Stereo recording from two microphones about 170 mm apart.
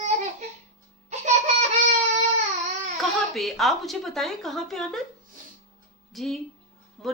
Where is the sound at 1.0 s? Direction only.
45° right (ahead or behind).